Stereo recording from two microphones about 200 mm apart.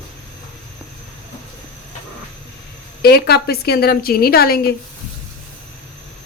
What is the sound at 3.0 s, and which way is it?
A woman's voice, 50° left (ahead or behind).